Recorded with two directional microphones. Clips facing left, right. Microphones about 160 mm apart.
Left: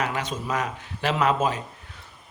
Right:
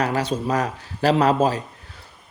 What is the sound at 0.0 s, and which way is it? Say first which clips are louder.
A man's voice: right 6 dB; 35° right (ahead or behind).